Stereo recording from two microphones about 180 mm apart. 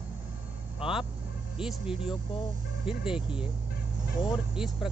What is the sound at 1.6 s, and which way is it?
Speech, 5° right (ahead or behind).